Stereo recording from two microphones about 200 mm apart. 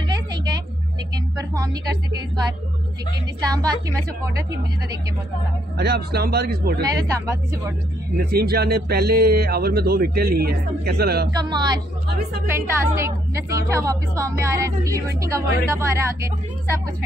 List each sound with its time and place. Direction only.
0.1 s a sound: 20° right (ahead or behind)
5.8 s speech: 50° right (ahead or behind)
6.8 s a woman's voice: 20° right (ahead or behind)
8.3 s speech: 50° right (ahead or behind)
11.3 s a woman's voice: 20° right (ahead or behind)